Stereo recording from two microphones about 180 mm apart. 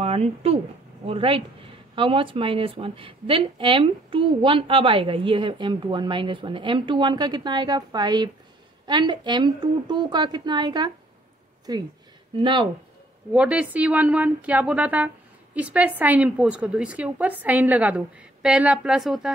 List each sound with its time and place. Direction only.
0.0 s a woman's voice: 35° right (ahead or behind)
13.3 s a woman's voice: 5° right (ahead or behind)